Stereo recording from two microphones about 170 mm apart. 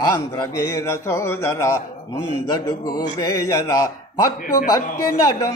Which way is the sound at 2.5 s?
25° left (ahead or behind).